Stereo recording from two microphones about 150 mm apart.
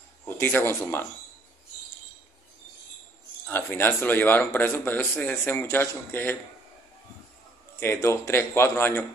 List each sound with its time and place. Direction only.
0.4 s speech: 15° left (ahead or behind)
3.4 s speech: 15° left (ahead or behind)
7.8 s speech: 20° left (ahead or behind)